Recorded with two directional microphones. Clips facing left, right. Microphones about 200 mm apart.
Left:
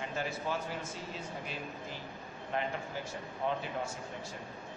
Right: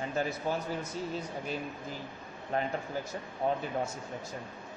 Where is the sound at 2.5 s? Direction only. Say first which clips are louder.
Right 3 dB; 40° right (ahead or behind).